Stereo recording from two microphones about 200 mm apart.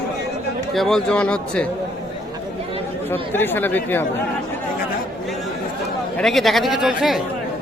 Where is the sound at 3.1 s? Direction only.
10° left (ahead or behind).